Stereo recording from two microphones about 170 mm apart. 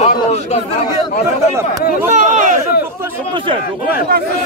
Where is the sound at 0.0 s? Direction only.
40° left (ahead or behind).